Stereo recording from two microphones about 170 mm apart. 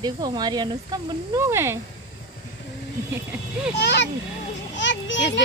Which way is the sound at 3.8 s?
90° left.